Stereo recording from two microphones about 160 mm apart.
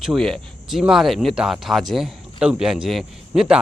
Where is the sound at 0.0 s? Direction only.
Centre (ahead or behind).